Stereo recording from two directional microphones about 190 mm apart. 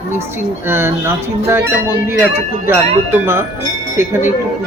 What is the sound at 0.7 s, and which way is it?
Speech, 15° right (ahead or behind).